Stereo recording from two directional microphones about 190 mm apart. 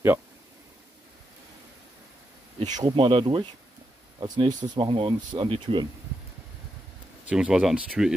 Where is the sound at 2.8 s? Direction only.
25° right (ahead or behind).